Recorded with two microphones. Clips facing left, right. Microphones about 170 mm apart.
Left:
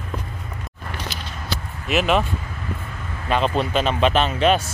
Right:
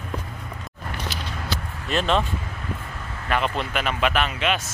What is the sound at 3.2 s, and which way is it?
Speech, 20° left (ahead or behind).